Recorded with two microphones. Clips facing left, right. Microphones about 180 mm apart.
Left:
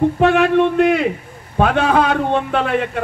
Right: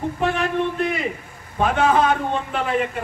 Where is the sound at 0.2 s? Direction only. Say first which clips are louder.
Left 7 dB; 75° left (ahead or behind).